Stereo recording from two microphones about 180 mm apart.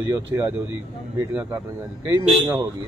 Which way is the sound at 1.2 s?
10° right (ahead or behind).